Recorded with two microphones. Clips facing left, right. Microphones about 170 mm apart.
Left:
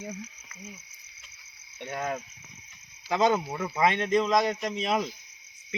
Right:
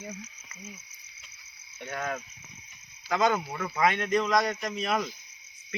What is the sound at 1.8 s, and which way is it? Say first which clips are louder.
Speech: left 2 dB; 15° left (ahead or behind).